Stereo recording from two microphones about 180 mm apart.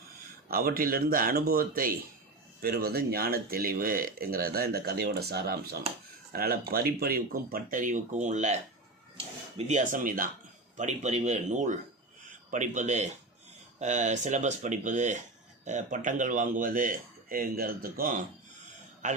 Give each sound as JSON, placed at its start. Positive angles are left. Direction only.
{"t": 0.4, "sound": "speech", "side_deg": -50}